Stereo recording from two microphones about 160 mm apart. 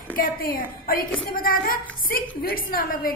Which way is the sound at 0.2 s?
65° left (ahead or behind).